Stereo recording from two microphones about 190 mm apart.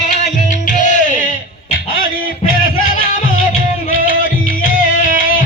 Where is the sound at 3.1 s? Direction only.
45° left (ahead or behind).